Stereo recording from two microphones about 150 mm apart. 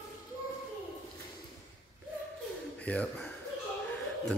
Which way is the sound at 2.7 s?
10° left (ahead or behind).